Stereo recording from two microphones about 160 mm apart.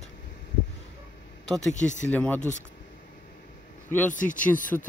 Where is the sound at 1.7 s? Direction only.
50° left (ahead or behind).